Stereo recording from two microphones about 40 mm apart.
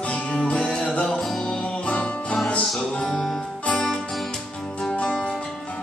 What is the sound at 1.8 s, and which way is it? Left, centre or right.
Music, left.